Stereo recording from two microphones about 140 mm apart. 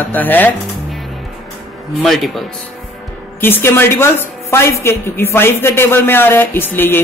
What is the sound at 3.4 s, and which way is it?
A woman's voice, 15° left (ahead or behind).